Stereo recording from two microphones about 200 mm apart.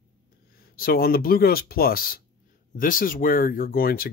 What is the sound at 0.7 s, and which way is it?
Speech, 50° left (ahead or behind).